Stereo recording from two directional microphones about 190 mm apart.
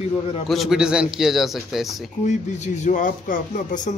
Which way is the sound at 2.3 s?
40° left (ahead or behind).